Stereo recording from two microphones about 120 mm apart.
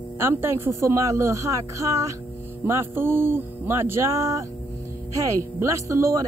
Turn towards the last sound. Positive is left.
turn(degrees=-25)  # may be behind; listen again after turning